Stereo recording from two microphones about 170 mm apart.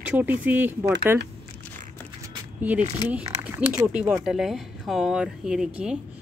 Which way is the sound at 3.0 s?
25° left (ahead or behind).